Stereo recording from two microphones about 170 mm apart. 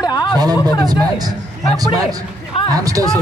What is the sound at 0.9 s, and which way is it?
Speech, 25° right (ahead or behind).